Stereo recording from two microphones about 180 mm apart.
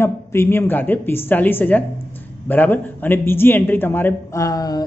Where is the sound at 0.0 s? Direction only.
15° left (ahead or behind).